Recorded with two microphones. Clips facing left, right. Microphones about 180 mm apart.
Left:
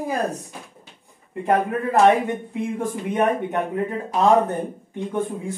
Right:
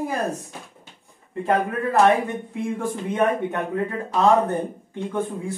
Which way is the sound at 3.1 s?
20° left (ahead or behind).